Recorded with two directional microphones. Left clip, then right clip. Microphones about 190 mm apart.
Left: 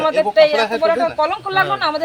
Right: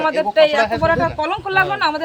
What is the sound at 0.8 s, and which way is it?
Speech, 35° right (ahead or behind).